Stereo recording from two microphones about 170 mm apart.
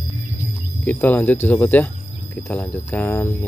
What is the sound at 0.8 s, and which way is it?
Speech, 10° left (ahead or behind).